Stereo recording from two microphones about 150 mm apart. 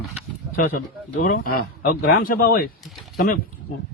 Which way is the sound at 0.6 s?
70° left (ahead or behind).